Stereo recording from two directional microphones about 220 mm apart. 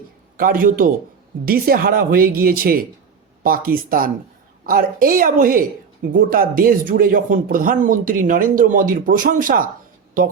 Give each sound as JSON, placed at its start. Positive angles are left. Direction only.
{"t": 0.3, "sound": "speech", "side_deg": -40}